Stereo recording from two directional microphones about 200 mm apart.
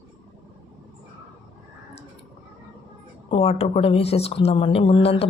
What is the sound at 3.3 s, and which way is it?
A woman's voice, 30° left (ahead or behind).